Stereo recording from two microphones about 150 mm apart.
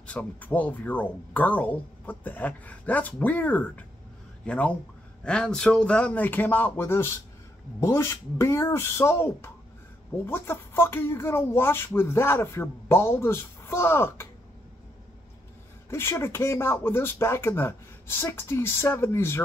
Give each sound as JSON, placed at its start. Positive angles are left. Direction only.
{"t": 0.0, "sound": "speech", "side_deg": 10}
{"t": 15.9, "sound": "speech", "side_deg": 15}